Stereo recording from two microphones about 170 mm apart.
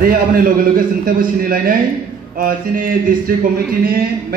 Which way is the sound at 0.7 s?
55° right (ahead or behind).